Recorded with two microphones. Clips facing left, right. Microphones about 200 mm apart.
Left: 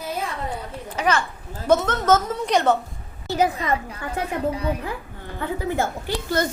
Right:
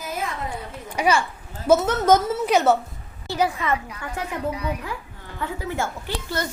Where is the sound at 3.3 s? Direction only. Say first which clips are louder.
Left 2 dB; 20° left (ahead or behind).